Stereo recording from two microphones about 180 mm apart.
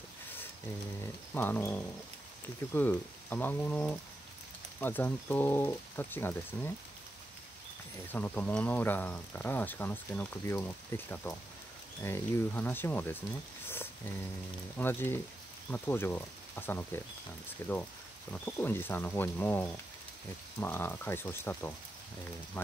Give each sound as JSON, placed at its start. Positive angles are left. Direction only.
{"t": 1.3, "sound": "speech", "side_deg": 10}
{"t": 8.1, "sound": "speech", "side_deg": 10}
{"t": 14.8, "sound": "speech", "side_deg": 10}